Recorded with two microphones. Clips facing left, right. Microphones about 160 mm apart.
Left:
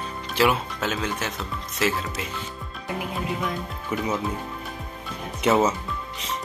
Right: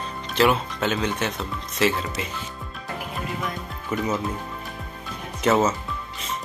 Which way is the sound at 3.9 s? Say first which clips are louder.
Right 1 dB; 10° left (ahead or behind).